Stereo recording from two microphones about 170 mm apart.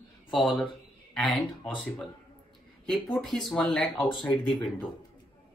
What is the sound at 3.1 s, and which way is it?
Speech, 5° left (ahead or behind).